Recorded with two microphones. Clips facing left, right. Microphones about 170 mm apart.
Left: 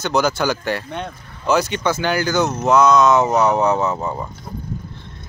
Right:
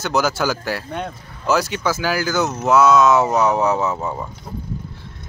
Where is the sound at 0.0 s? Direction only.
5° right (ahead or behind).